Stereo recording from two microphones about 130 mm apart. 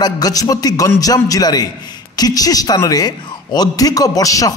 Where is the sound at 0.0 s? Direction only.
30° left (ahead or behind).